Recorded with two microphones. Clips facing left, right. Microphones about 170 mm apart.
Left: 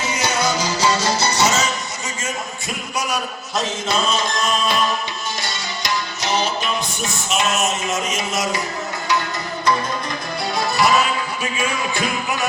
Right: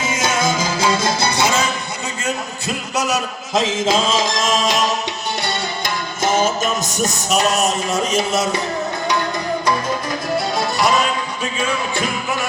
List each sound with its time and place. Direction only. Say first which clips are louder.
0.4 s music: even; 50° right (ahead or behind)
3.5 s music: right 5 dB; 90° right
5.4 s music: right 5 dB; 60° right (ahead or behind); by 8.4 s 30° right (ahead or behind)
10.6 s music: left 3 dB; centre (ahead or behind)